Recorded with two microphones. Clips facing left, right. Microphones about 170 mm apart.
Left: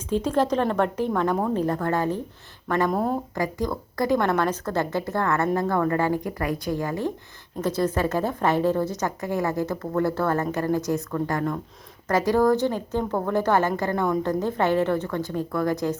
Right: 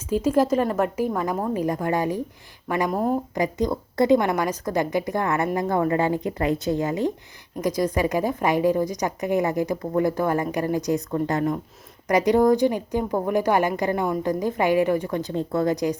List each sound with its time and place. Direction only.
0.1 s a woman's voice: 10° right (ahead or behind)
3.3 s a woman's voice: 20° right (ahead or behind)